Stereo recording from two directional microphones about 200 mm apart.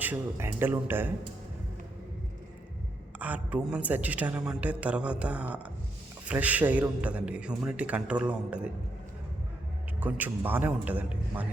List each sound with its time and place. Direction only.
0.0 s a man's voice: 10° right (ahead or behind)
3.2 s a man's voice: 5° right (ahead or behind)
10.0 s a man's voice: 10° right (ahead or behind)